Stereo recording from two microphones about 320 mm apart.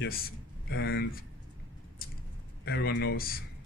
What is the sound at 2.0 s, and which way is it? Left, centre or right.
Vehicle, left.